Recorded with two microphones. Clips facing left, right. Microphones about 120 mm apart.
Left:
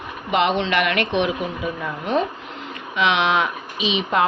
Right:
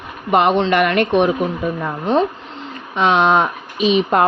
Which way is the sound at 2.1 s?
35° right (ahead or behind).